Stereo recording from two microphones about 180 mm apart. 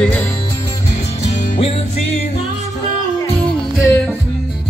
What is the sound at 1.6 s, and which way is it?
Music, 30° left (ahead or behind).